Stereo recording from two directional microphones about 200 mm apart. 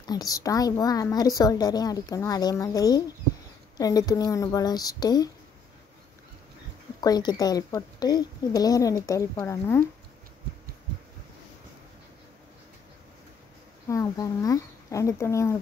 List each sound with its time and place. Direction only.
0.0 s a woman's voice: 20° left (ahead or behind)
7.0 s a woman's voice: 20° left (ahead or behind)
13.8 s speech: 15° left (ahead or behind)